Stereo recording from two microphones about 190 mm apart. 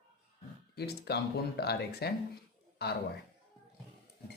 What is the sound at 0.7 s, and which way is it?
Speech, 60° left (ahead or behind).